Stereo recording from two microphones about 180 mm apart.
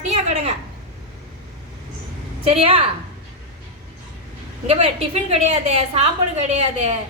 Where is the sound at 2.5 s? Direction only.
30° right (ahead or behind).